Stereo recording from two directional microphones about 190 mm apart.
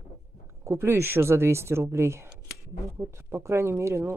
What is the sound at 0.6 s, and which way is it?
Speech, 15° right (ahead or behind).